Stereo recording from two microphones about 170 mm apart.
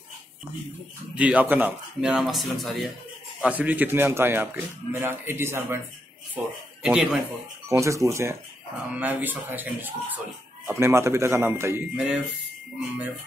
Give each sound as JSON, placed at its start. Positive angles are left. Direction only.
{"t": 1.1, "sound": "a man's voice", "side_deg": -10}
{"t": 7.6, "sound": "a man's voice", "side_deg": -15}